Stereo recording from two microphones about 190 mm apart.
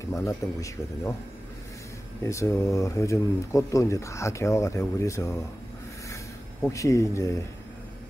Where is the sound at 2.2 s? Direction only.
15° left (ahead or behind).